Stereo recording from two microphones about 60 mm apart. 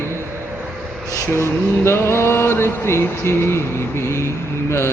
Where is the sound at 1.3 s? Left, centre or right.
Left.